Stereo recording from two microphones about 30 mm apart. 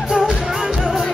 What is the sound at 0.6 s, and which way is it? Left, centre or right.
Music, centre.